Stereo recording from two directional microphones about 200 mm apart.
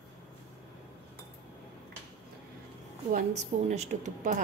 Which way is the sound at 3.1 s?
35° right (ahead or behind).